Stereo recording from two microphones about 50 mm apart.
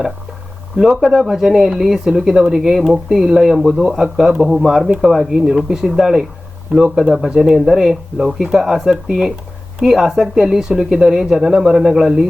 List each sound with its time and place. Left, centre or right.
0.8 s speech: centre